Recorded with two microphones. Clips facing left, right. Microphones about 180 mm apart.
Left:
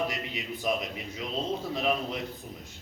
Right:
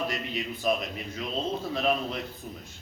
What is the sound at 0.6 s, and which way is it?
Speech, 15° left (ahead or behind).